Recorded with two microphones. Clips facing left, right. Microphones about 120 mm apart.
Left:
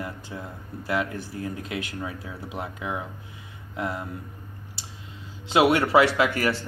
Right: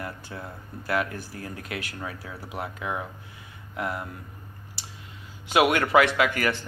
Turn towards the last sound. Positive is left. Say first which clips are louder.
# left 1 dB
turn(degrees=30)  # may be behind; listen again after turning